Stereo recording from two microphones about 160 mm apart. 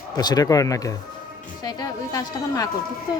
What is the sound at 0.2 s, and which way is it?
Speech, 25° left (ahead or behind).